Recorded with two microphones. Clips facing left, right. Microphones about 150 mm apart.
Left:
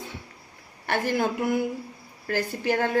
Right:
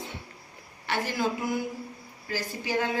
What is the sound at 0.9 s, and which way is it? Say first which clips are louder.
A woman's voice: left 4 dB; 50° left (ahead or behind).